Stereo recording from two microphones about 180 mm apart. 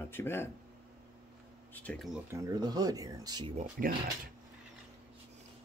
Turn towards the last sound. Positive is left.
turn(degrees=-50)  # may be behind; listen again after turning